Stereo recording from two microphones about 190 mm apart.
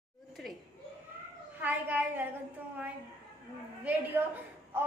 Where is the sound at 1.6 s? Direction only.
10° right (ahead or behind).